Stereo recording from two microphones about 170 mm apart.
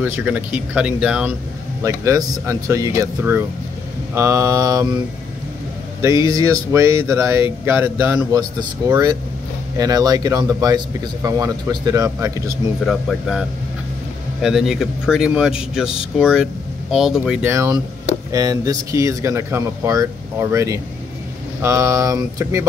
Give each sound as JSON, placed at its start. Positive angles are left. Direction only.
{"t": 0.0, "sound": "speech", "side_deg": -10}
{"t": 1.8, "sound": "speech", "side_deg": -15}
{"t": 6.0, "sound": "speech", "side_deg": -20}
{"t": 8.4, "sound": "speech", "side_deg": -25}
{"t": 12.8, "sound": "speech", "side_deg": 0}